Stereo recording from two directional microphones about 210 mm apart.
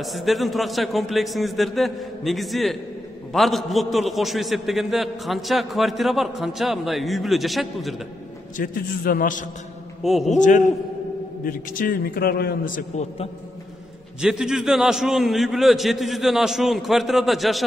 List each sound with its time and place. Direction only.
0.0 s a man's voice: centre (ahead or behind)
8.5 s a man's voice: 45° left (ahead or behind)
10.0 s a man's voice: centre (ahead or behind)
11.4 s a man's voice: 40° left (ahead or behind)
14.2 s a man's voice: centre (ahead or behind)